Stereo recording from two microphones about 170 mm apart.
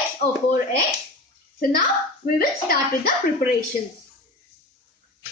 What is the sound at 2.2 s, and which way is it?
Speech, 55° left (ahead or behind).